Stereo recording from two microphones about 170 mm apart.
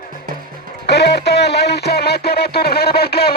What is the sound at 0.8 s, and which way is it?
Music, 80° left.